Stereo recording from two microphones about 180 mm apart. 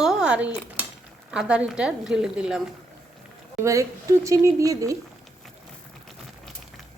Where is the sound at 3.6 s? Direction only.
15° right (ahead or behind).